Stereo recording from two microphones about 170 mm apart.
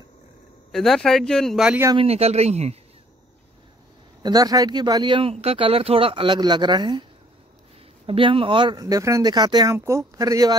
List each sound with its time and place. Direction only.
0.7 s speech: centre (ahead or behind)
2.0 s speech: 35° right (ahead or behind)
4.2 s speech: 20° right (ahead or behind)
8.1 s speech: 30° right (ahead or behind)